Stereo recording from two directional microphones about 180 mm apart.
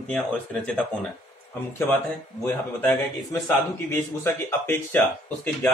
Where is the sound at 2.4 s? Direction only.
10° left (ahead or behind).